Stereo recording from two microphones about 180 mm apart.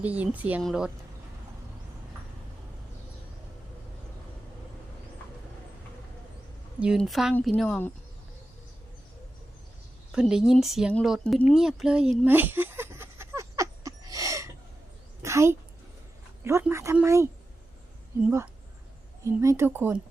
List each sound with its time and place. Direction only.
0.0 s speech: 10° right (ahead or behind)
6.7 s speech: 5° right (ahead or behind)
10.1 s speech: 5° right (ahead or behind)
11.5 s a sound: centre (ahead or behind)
16.4 s speech: 15° right (ahead or behind)
19.2 s speech: 15° right (ahead or behind)